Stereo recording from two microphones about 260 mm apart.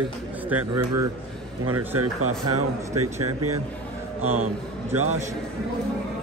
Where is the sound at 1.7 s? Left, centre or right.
Right.